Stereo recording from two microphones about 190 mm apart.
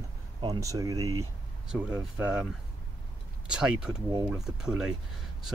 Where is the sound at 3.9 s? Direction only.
20° right (ahead or behind).